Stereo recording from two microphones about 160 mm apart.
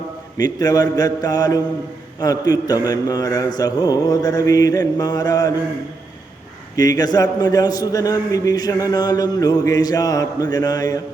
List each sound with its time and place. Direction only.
0.3 s a man's voice: 25° left (ahead or behind)
6.7 s a man's voice: 25° left (ahead or behind)